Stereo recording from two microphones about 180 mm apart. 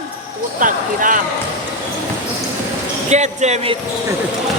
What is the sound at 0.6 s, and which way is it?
Speech, 50° right (ahead or behind).